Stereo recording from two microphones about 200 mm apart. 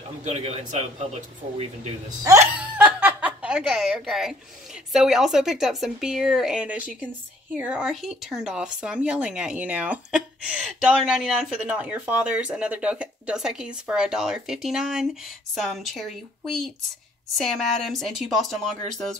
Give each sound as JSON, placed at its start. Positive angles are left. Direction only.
{"t": 0.2, "sound": "a man's voice", "side_deg": -35}
{"t": 2.2, "sound": "laughter", "side_deg": -10}
{"t": 4.9, "sound": "speech", "side_deg": 0}